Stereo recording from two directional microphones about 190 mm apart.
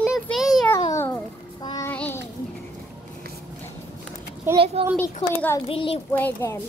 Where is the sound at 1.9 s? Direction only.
10° left (ahead or behind).